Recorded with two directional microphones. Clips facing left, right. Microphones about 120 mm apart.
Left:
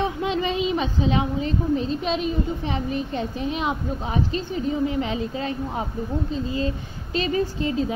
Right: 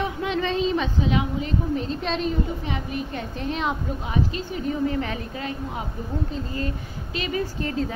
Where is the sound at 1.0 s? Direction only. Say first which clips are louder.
Left 2 dB; 30° left (ahead or behind).